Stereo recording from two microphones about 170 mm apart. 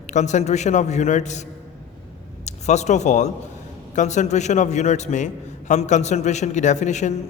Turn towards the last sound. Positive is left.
turn(degrees=45)  # may be behind; listen again after turning